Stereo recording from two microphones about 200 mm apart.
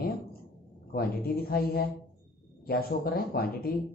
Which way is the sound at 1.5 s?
50° left (ahead or behind).